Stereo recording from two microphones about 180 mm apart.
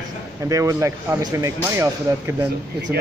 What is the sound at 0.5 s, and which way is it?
Speech, 15° right (ahead or behind).